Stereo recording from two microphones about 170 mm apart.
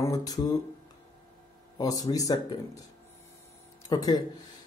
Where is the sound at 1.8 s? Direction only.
20° left (ahead or behind).